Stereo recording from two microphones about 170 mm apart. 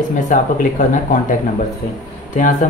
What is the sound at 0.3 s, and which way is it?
Speech, 50° left (ahead or behind).